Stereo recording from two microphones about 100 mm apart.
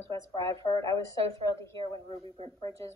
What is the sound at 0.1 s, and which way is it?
A woman's voice, 35° left (ahead or behind).